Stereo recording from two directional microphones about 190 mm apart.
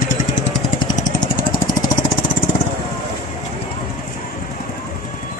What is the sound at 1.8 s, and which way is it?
Lawn mower, 20° left (ahead or behind).